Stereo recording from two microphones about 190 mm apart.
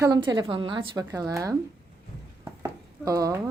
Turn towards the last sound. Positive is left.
turn(degrees=-15)  # may be behind; listen again after turning